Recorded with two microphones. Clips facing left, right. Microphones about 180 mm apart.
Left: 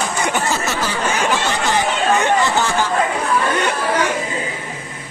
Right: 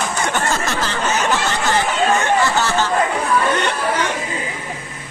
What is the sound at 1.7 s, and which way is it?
Chatter, 15° left (ahead or behind).